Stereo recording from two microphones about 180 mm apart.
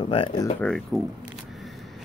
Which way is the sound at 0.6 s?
5° left (ahead or behind).